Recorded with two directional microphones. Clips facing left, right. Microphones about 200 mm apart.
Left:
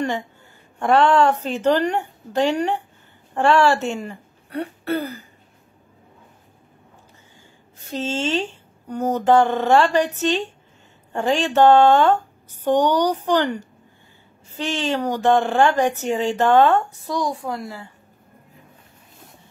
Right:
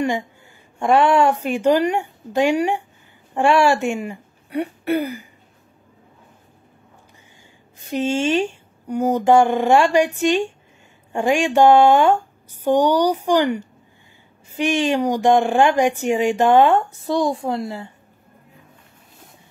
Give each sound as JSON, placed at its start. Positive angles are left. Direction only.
{"t": 0.7, "sound": "speech", "side_deg": -10}
{"t": 7.8, "sound": "speech", "side_deg": -15}
{"t": 16.9, "sound": "a child's voice", "side_deg": -25}